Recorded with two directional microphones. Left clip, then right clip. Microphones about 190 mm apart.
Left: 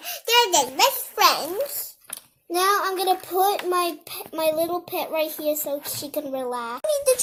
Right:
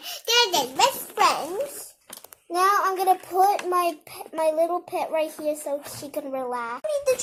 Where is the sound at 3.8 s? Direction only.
30° left (ahead or behind).